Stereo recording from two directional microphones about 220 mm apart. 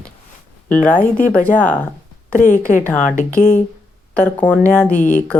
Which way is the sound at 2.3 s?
35° left (ahead or behind).